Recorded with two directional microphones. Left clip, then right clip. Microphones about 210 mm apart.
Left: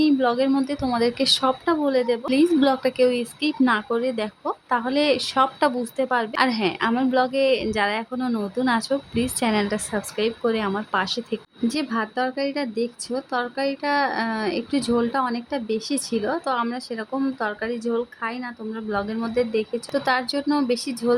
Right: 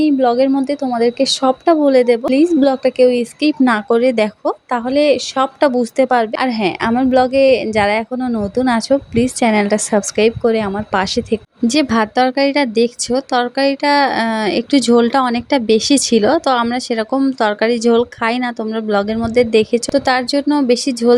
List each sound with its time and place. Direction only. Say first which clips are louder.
0.0 s a woman's voice: right 7 dB; 20° right (ahead or behind)